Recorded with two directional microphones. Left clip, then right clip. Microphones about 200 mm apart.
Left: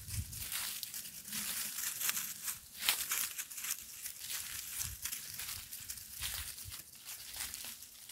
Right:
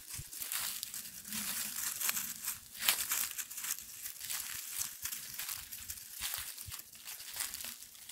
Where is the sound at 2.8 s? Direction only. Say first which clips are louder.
Right 1 dB; 60° right (ahead or behind).